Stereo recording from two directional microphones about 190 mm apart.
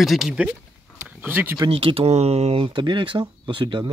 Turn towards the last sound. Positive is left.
turn(degrees=-25)  # may be behind; listen again after turning